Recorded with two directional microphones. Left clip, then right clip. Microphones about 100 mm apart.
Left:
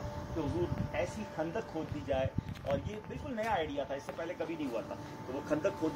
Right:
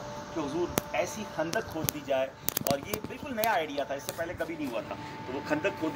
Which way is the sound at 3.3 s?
Centre (ahead or behind).